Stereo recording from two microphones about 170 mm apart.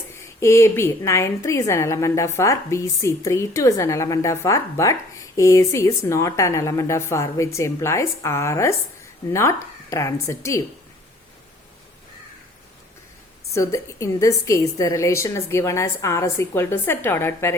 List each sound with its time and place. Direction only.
0.3 s a woman's voice: 15° left (ahead or behind)
13.5 s a woman's voice: 20° left (ahead or behind)